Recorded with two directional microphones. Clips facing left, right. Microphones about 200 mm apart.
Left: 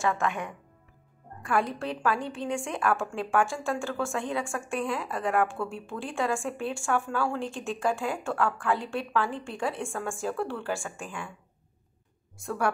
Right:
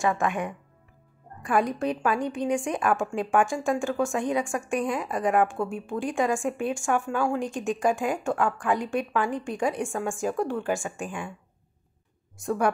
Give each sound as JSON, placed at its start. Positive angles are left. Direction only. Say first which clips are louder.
{"t": 0.0, "sound": "a woman's voice", "louder": "right 3 dB", "side_deg": -15}
{"t": 12.4, "sound": "a woman's voice", "louder": "right 4 dB", "side_deg": -20}